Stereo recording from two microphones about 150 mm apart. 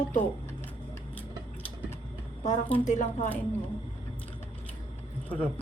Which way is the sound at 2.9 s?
55° left (ahead or behind).